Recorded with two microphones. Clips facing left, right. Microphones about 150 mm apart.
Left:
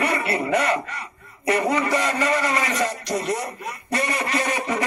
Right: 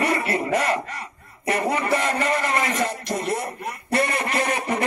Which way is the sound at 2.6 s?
55° right (ahead or behind).